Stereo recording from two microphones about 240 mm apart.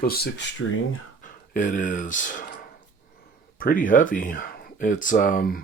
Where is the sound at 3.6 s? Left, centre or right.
Left.